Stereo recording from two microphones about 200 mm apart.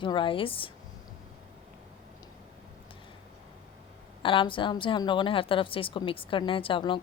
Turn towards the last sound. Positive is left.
turn(degrees=25)  # may be behind; listen again after turning